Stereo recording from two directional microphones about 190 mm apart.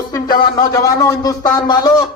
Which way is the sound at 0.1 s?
20° left (ahead or behind).